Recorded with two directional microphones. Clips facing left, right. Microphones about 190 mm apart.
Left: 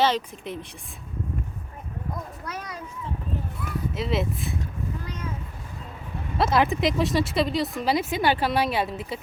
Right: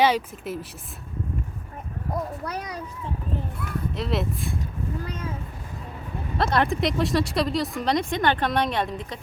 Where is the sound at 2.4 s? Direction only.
65° right (ahead or behind).